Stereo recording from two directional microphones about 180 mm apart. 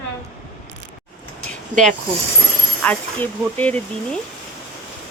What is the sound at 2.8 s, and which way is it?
Speech, 10° left (ahead or behind).